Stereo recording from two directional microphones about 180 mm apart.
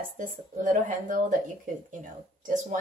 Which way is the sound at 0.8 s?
50° right (ahead or behind).